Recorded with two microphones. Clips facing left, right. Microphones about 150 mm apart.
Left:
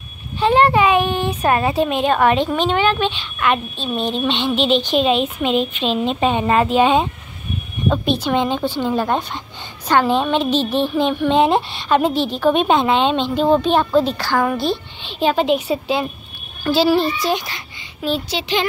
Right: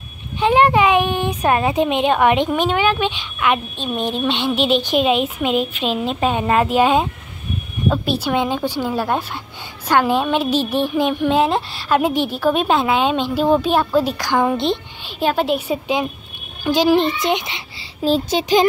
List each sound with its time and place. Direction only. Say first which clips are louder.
0.4 s a woman's voice: even; 15° right (ahead or behind)
15.0 s a woman's voice: left 2 dB; 10° right (ahead or behind)
18.0 s speech: right 4 dB; 40° right (ahead or behind)